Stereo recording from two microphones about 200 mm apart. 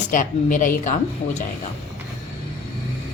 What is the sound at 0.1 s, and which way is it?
A woman's voice, 40° left (ahead or behind).